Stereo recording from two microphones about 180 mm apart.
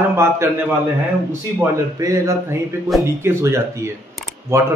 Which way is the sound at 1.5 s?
15° right (ahead or behind).